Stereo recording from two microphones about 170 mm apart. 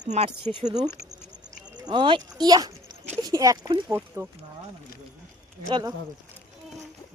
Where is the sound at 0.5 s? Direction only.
40° right (ahead or behind).